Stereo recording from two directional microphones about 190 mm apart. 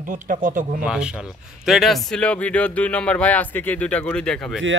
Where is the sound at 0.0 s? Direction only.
45° right (ahead or behind).